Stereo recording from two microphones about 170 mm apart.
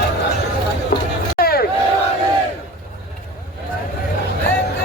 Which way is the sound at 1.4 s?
60° left (ahead or behind).